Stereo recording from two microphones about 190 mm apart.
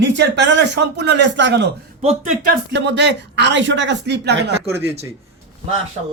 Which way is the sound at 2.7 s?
65° right (ahead or behind).